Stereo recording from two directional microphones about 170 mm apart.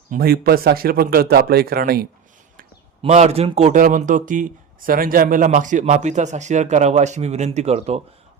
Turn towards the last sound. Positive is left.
turn(degrees=-40)  # may be behind; listen again after turning